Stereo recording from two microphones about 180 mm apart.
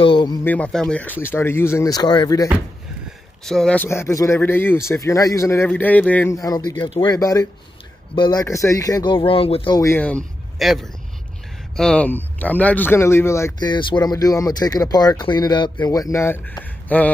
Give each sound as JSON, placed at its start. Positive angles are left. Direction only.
{"t": 0.0, "sound": "a sound", "side_deg": 25}
{"t": 0.4, "sound": "speech", "side_deg": 10}
{"t": 3.4, "sound": "speech", "side_deg": 5}
{"t": 9.8, "sound": "speech", "side_deg": 10}